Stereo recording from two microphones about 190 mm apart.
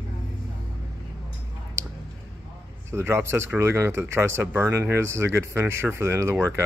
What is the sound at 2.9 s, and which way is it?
Speech, 15° right (ahead or behind).